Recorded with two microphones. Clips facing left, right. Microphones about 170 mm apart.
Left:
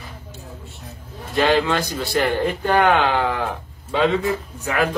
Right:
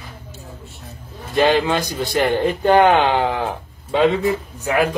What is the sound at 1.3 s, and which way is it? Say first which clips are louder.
A man's voice: right 2 dB; 20° right (ahead or behind).